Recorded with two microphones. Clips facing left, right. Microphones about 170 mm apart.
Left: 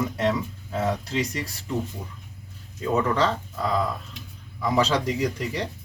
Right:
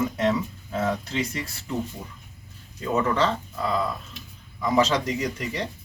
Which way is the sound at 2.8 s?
Centre (ahead or behind).